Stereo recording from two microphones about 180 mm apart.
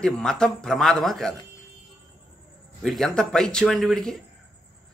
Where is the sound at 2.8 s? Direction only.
Centre (ahead or behind).